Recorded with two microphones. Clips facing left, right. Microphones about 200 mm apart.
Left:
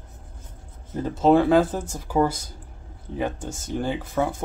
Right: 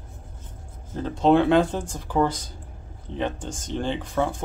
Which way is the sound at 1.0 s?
5° left (ahead or behind).